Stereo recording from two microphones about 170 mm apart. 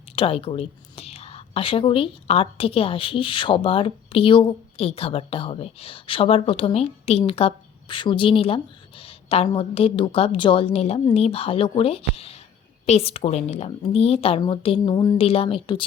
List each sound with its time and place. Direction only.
0.2 s speech: 35° left (ahead or behind)
15.2 s speech: 35° left (ahead or behind)